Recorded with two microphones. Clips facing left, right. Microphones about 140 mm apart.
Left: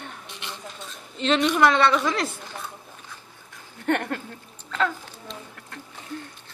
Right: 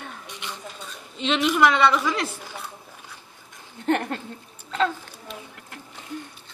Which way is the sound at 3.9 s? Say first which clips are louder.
Right 1 dB; 20° right (ahead or behind).